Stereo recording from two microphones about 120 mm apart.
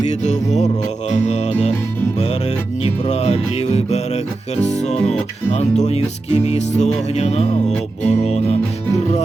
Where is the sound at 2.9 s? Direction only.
60° left (ahead or behind).